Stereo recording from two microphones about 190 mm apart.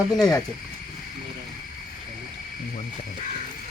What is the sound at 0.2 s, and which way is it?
Speech, 20° left (ahead or behind).